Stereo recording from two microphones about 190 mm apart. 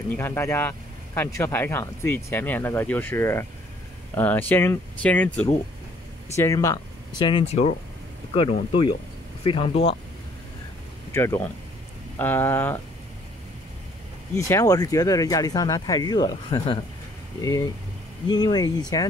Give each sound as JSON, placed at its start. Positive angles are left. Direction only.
{"t": 0.1, "sound": "speech", "side_deg": 15}
{"t": 9.4, "sound": "speech", "side_deg": 30}
{"t": 11.1, "sound": "speech", "side_deg": 15}
{"t": 14.3, "sound": "speech", "side_deg": 15}